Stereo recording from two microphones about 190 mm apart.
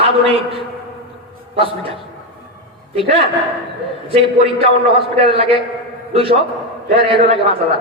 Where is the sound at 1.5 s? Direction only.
30° right (ahead or behind).